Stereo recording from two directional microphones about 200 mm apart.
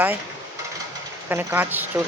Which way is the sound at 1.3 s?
10° right (ahead or behind).